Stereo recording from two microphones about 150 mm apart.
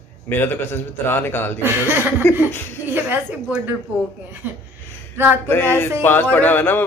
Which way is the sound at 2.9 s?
10° right (ahead or behind).